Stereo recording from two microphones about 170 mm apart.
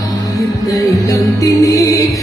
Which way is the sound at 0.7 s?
20° left (ahead or behind).